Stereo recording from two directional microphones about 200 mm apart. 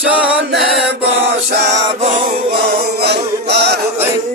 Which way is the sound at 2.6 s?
55° right (ahead or behind).